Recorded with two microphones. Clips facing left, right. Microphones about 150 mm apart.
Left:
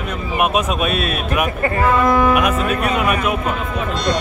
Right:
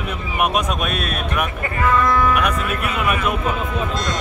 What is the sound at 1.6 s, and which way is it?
Speech, 40° left (ahead or behind).